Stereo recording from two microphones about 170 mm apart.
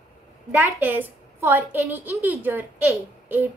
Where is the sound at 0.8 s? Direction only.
10° right (ahead or behind).